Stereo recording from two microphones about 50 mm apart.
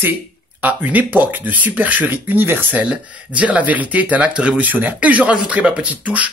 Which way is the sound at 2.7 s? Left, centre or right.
Right.